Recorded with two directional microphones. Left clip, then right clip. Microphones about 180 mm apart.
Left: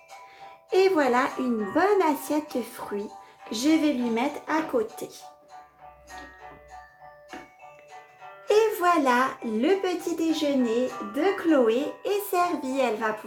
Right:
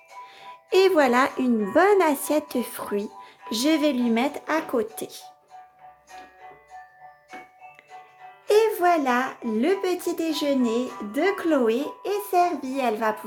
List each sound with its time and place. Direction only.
0.7 s speech: 45° right (ahead or behind)
8.4 s a child's voice: 35° right (ahead or behind)